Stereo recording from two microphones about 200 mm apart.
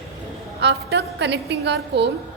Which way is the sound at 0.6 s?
60° right (ahead or behind).